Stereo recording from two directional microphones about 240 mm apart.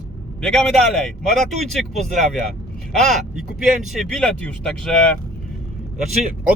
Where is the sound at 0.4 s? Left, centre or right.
Centre.